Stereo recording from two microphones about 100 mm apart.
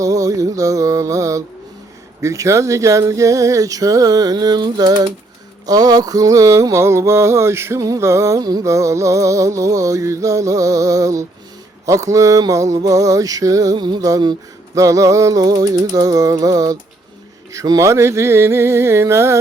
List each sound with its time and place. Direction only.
0.0 s mantra: 35° right (ahead or behind)
13.7 s music: 50° right (ahead or behind)
14.0 s mantra: 40° right (ahead or behind)
17.5 s music: 35° right (ahead or behind)